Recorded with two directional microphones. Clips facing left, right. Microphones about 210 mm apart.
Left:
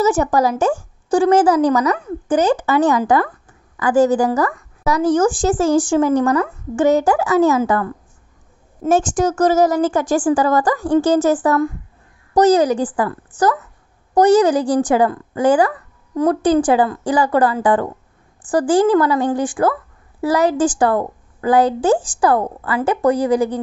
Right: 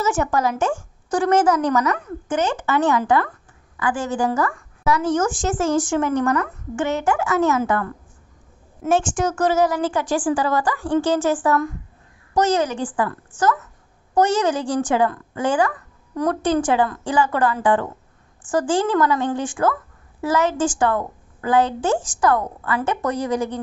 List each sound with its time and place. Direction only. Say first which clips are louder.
0.0 s speech: left 5 dB; 35° left (ahead or behind)
8.8 s speech: left 4 dB; 40° left (ahead or behind)